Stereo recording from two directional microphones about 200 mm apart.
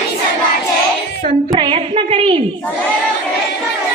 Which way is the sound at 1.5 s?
25° right (ahead or behind).